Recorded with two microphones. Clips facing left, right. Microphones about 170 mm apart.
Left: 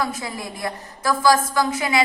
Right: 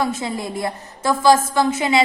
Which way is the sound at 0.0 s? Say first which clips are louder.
Right 4 dB; 25° right (ahead or behind).